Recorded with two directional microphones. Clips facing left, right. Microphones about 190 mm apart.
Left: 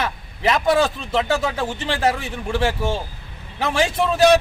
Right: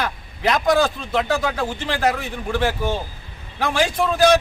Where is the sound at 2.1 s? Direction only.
10° left (ahead or behind).